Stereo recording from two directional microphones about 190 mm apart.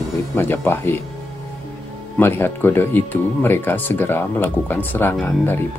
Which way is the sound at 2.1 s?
10° left (ahead or behind).